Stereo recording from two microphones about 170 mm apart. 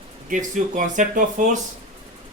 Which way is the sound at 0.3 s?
50° right (ahead or behind).